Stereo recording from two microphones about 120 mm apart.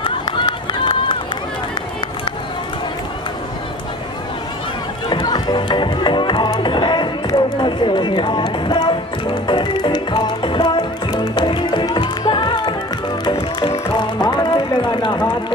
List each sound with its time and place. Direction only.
0.0 s run: 40° left (ahead or behind)
5.2 s music: 35° left (ahead or behind)
13.9 s music: 35° left (ahead or behind)